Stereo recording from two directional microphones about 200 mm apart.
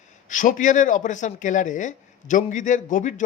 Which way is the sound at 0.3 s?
40° left (ahead or behind).